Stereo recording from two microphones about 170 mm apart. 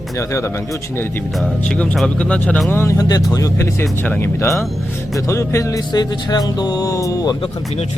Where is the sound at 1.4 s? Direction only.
5° left (ahead or behind).